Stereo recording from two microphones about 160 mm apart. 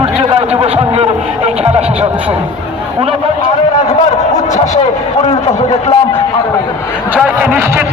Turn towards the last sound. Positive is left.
turn(degrees=-10)  # may be behind; listen again after turning